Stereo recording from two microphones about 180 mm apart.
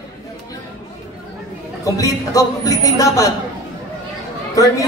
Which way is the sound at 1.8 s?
20° left (ahead or behind).